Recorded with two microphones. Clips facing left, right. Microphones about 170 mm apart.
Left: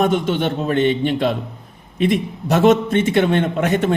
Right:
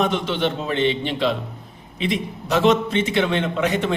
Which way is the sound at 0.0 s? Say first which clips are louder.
Left 4 dB; 50° left (ahead or behind).